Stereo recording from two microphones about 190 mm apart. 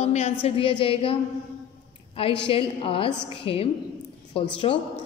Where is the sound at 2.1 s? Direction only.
30° left (ahead or behind).